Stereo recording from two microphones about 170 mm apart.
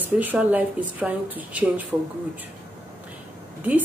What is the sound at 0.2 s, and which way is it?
Speech, 10° right (ahead or behind).